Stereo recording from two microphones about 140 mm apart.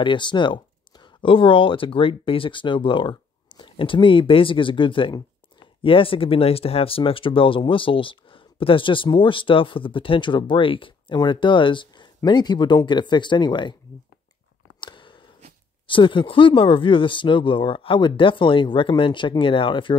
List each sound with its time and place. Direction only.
0.0 s speech: 35° left (ahead or behind)
14.8 s a sound: 35° left (ahead or behind)
15.9 s speech: 35° left (ahead or behind)